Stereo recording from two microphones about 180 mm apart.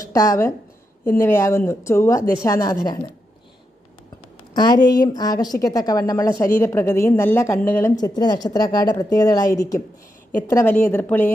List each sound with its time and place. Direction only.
0.0 s a woman's voice: 20° left (ahead or behind)
4.5 s a woman's voice: 25° left (ahead or behind)
7.9 s a woman's voice: 20° left (ahead or behind)